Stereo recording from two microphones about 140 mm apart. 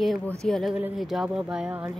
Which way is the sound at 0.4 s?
5° left (ahead or behind).